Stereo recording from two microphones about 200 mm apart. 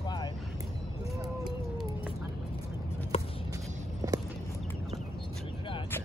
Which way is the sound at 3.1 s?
30° left (ahead or behind).